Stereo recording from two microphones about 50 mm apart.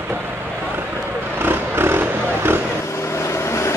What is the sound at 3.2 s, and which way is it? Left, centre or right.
Vehicle, left.